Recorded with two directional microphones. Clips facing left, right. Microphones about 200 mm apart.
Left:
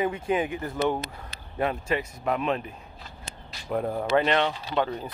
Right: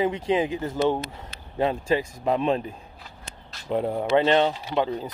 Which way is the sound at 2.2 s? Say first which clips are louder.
Right 4 dB; 30° right (ahead or behind).